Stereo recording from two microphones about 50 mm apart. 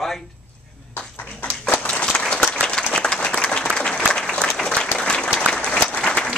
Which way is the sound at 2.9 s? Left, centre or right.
Centre.